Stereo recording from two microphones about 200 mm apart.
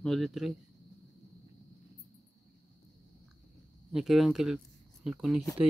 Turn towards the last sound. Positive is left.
turn(degrees=-5)  # may be behind; listen again after turning